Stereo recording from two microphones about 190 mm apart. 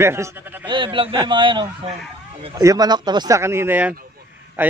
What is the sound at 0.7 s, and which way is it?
A man's voice, 25° right (ahead or behind).